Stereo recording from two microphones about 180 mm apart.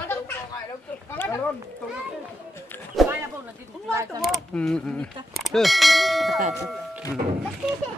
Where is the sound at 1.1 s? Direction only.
10° left (ahead or behind).